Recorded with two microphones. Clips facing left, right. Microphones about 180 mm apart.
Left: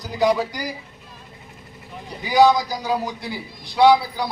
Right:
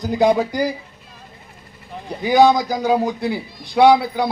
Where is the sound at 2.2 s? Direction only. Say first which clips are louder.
Right 2 dB; 55° right (ahead or behind).